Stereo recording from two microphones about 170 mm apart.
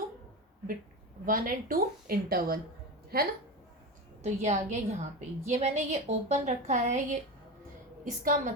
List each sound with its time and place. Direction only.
1.2 s a woman's voice: 55° right (ahead or behind)
4.2 s a woman's voice: 40° right (ahead or behind)